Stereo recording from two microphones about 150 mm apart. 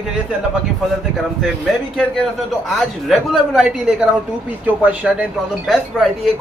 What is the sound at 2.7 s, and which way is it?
Speech, centre (ahead or behind).